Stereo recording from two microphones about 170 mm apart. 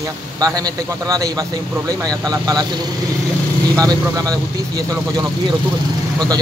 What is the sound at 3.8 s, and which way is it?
A man's voice, 20° right (ahead or behind).